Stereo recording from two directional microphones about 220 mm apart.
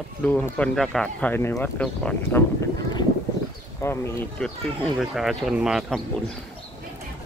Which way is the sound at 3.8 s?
10° left (ahead or behind).